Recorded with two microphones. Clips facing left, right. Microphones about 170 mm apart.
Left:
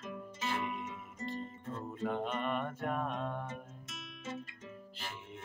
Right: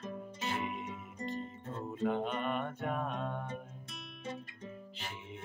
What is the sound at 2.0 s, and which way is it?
Music, centre (ahead or behind).